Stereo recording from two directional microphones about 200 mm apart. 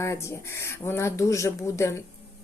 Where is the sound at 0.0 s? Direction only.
15° left (ahead or behind).